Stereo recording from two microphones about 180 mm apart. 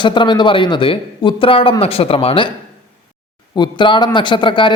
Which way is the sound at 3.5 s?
25° left (ahead or behind).